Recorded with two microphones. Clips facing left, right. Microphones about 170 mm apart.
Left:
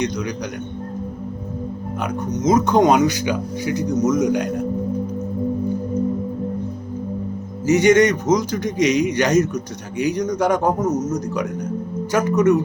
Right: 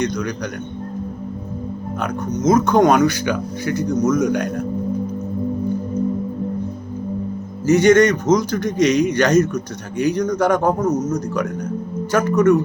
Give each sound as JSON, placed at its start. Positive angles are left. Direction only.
{"t": 2.0, "sound": "speech", "side_deg": 15}
{"t": 7.7, "sound": "speech", "side_deg": 15}
{"t": 10.9, "sound": "a man's voice", "side_deg": 40}
{"t": 12.1, "sound": "speech", "side_deg": 15}